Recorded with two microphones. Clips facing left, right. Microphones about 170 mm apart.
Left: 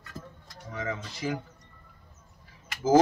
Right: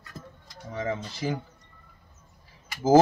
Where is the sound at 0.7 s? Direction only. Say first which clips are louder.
Right 4 dB; 30° right (ahead or behind).